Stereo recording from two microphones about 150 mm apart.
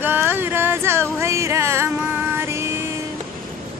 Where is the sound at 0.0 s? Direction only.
15° right (ahead or behind).